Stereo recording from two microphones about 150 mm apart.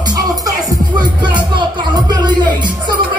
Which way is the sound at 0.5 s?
30° right (ahead or behind).